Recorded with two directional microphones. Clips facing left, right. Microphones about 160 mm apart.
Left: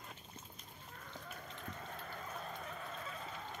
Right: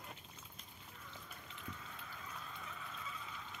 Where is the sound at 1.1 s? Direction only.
45° left (ahead or behind).